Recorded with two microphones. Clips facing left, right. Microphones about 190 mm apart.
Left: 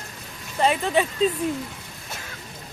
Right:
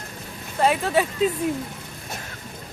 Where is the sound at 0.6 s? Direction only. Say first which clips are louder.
Right 1 dB; 5° right (ahead or behind).